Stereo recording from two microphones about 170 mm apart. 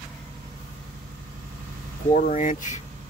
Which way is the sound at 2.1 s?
50° left (ahead or behind).